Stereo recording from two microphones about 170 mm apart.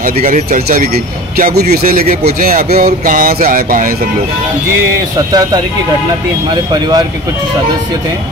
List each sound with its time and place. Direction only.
0.0 s speech: 55° right (ahead or behind)
5.3 s speech: 20° right (ahead or behind)